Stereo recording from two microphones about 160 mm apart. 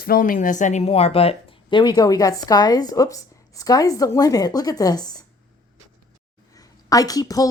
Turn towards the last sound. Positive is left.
turn(degrees=20)  # may be behind; listen again after turning